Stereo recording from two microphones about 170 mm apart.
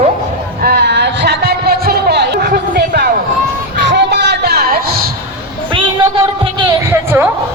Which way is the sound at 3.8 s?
90° right.